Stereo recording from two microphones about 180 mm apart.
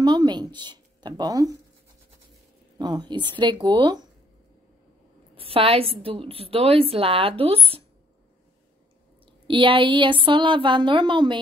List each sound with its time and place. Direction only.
0.0 s speech: 20° right (ahead or behind)
2.8 s speech: 25° right (ahead or behind)
5.3 s a woman's voice: 30° right (ahead or behind)
9.2 s speech: 30° right (ahead or behind)